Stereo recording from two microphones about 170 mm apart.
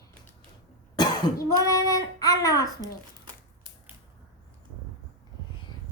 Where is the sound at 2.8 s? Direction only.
25° right (ahead or behind).